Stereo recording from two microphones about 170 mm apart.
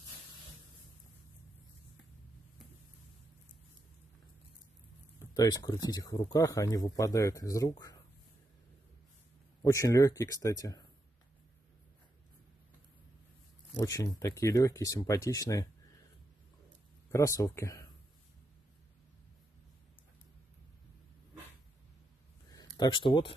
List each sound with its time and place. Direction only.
5.2 s speech: 20° left (ahead or behind)
9.6 s speech: 20° left (ahead or behind)
13.7 s speech: 20° left (ahead or behind)
17.1 s speech: 20° left (ahead or behind)
22.8 s speech: 30° left (ahead or behind)